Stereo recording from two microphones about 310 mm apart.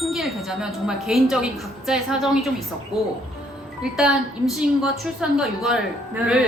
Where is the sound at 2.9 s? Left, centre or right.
Centre.